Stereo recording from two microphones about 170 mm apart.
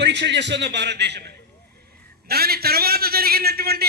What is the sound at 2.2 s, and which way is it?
A man's voice, 65° right (ahead or behind).